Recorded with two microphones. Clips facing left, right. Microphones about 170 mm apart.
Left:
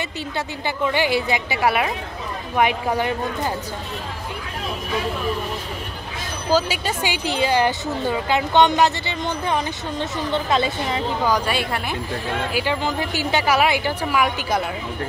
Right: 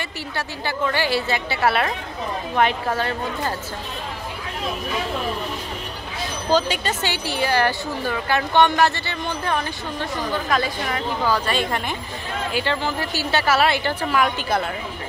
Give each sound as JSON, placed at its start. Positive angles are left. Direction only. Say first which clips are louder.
{"t": 0.4, "sound": "a woman's voice", "louder": "left 1 dB", "side_deg": 20}
{"t": 6.5, "sound": "a woman's voice", "louder": "even", "side_deg": 10}